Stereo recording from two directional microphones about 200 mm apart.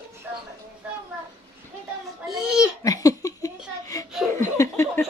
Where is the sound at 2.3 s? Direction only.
5° right (ahead or behind).